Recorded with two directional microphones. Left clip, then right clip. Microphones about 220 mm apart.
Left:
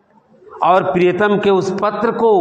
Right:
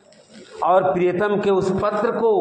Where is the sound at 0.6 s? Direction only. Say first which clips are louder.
Left 4 dB; 45° left (ahead or behind).